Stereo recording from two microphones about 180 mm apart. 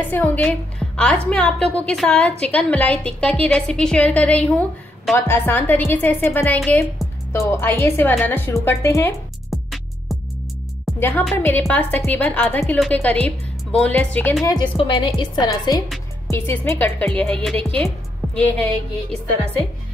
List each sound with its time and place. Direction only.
0.1 s a woman's voice: 10° left (ahead or behind)
9.5 s music: centre (ahead or behind)
11.0 s a woman's voice: 10° left (ahead or behind)
14.4 s a woman's voice: 25° left (ahead or behind)
16.3 s a woman's voice: 10° left (ahead or behind)